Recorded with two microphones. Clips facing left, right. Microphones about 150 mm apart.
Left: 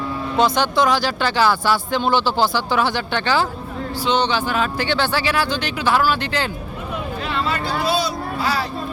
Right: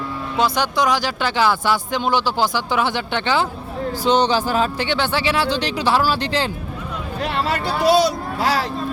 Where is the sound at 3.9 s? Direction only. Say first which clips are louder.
Right 3 dB; 45° right (ahead or behind).